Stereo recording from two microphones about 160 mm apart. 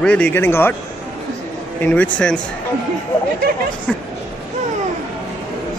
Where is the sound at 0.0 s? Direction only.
10° left (ahead or behind).